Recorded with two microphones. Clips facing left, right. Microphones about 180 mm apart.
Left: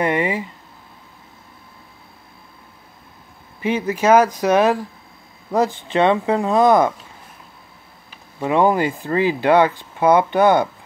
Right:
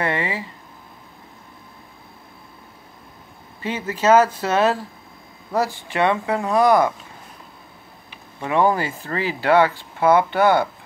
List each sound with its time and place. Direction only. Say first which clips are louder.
0.0 s speech: left 4 dB; 15° left (ahead or behind)
3.6 s speech: left 2 dB; 15° left (ahead or behind)
8.4 s speech: left 3 dB; 15° left (ahead or behind)